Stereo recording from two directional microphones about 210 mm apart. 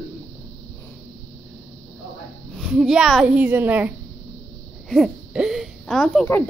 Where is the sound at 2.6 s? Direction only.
Centre (ahead or behind).